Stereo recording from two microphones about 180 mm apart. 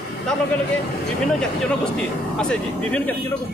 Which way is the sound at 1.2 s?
5° left (ahead or behind).